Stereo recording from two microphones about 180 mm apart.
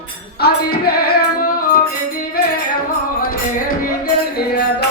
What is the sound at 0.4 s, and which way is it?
Music, 60° left (ahead or behind).